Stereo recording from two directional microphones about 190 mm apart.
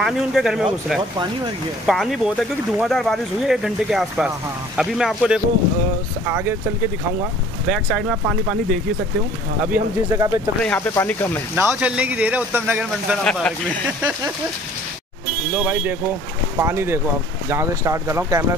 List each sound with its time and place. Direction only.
0.0 s speech: centre (ahead or behind)
1.9 s speech: centre (ahead or behind)
7.6 s speech: centre (ahead or behind)
10.1 s speech: 20° right (ahead or behind)
10.6 s speech: 10° left (ahead or behind)
11.5 s speech: 10° right (ahead or behind)
13.2 s speech: 5° left (ahead or behind)
15.5 s speech: 10° right (ahead or behind)